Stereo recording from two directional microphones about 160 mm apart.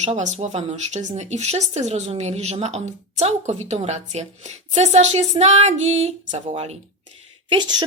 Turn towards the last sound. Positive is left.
turn(degrees=-25)  # may be behind; listen again after turning